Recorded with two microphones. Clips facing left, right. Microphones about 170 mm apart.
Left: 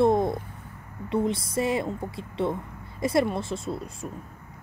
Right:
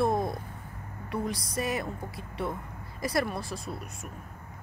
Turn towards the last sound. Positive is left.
turn(degrees=25)  # may be behind; listen again after turning